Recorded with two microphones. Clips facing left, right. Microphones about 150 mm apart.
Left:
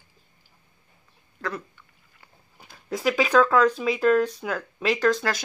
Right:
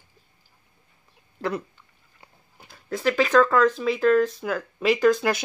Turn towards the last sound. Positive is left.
turn(degrees=-15)  # may be behind; listen again after turning